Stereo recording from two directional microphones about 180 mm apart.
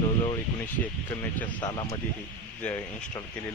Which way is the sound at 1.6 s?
20° left (ahead or behind).